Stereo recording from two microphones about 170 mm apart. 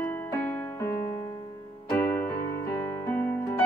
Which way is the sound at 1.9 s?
15° left (ahead or behind).